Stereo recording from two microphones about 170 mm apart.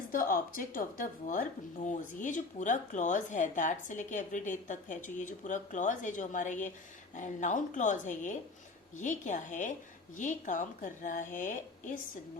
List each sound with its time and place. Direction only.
0.1 s speech: 55° left (ahead or behind)